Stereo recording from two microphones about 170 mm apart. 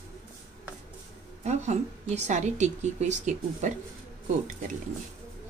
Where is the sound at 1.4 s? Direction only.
40° right (ahead or behind).